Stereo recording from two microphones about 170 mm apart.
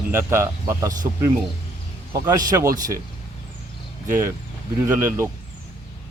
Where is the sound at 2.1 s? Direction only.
20° right (ahead or behind).